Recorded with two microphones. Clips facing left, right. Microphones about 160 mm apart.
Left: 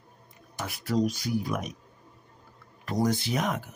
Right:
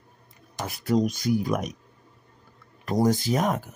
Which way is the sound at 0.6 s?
40° right (ahead or behind).